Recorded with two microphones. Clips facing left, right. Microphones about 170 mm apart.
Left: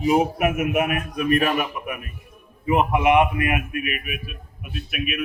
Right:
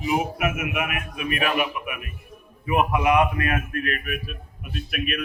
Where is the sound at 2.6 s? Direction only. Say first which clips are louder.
Left 2 dB; 25° left (ahead or behind).